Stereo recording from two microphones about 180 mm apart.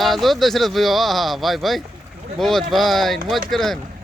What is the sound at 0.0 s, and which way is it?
Speech, centre (ahead or behind).